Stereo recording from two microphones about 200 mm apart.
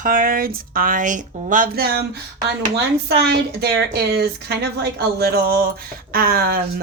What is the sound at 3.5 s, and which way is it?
Speech, 55° right (ahead or behind).